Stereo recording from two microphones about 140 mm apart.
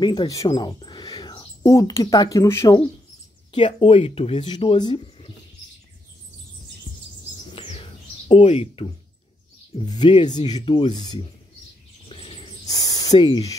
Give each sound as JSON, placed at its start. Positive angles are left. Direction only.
{"t": 0.0, "sound": "speech", "side_deg": 35}
{"t": 3.5, "sound": "speech", "side_deg": 40}
{"t": 7.5, "sound": "bird", "side_deg": 45}
{"t": 9.8, "sound": "speech", "side_deg": 35}
{"t": 12.1, "sound": "a sound", "side_deg": 40}
{"t": 12.6, "sound": "cricket", "side_deg": 30}